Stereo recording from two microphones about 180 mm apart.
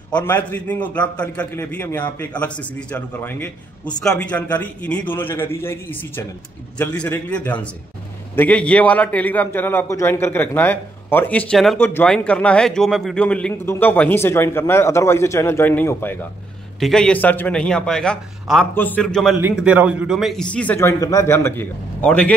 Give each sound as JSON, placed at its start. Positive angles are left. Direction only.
{"t": 0.1, "sound": "a man's voice", "side_deg": 10}
{"t": 19.4, "sound": "a man's voice", "side_deg": -5}